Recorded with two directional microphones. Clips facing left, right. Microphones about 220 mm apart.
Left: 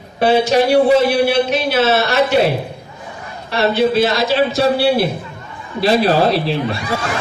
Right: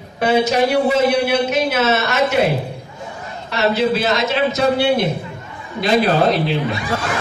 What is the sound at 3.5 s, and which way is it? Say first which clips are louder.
A man's voice: left 3 dB; 30° left (ahead or behind).